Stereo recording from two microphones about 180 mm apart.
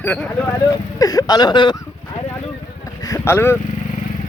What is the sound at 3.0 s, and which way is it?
Speech, 15° left (ahead or behind).